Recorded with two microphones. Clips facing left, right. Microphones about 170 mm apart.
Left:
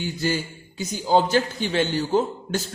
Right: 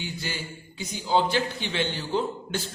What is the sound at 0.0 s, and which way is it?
A man's voice, 45° left (ahead or behind).